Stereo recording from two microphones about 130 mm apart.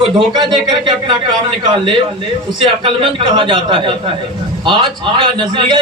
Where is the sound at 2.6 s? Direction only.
40° right (ahead or behind).